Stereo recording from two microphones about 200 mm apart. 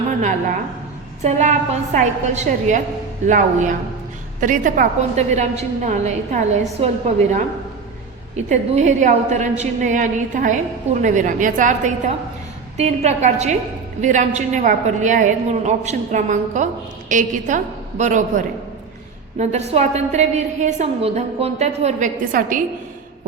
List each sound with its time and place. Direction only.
1.2 s a woman's voice: 35° right (ahead or behind)